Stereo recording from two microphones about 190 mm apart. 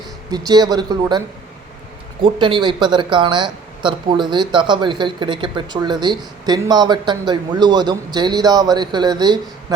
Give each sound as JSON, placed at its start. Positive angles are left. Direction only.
{"t": 0.3, "sound": "speech", "side_deg": -20}
{"t": 2.2, "sound": "speech", "side_deg": -25}